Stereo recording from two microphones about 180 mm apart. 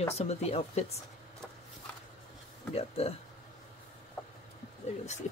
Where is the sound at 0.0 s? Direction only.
35° left (ahead or behind).